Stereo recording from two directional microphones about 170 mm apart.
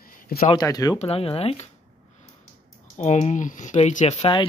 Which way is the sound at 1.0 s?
35° left (ahead or behind).